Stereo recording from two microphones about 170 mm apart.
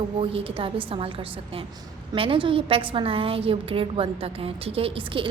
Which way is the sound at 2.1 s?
30° right (ahead or behind).